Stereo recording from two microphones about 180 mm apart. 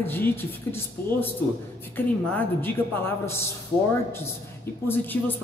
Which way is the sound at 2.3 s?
10° left (ahead or behind).